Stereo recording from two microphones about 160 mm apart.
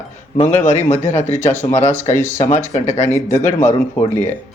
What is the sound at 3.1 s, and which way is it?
Speech, 15° left (ahead or behind).